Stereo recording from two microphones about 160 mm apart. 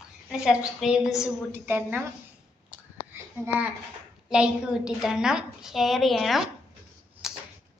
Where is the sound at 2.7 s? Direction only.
10° right (ahead or behind).